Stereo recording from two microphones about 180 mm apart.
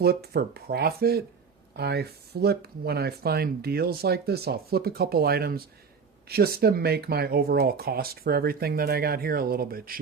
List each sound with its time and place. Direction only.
0.0 s speech: 60° right (ahead or behind)